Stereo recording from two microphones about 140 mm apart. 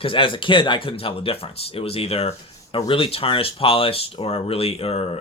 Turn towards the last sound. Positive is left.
turn(degrees=45)  # may be behind; listen again after turning